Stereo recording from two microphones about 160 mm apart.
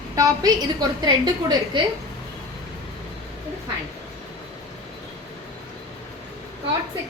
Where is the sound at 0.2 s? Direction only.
25° right (ahead or behind).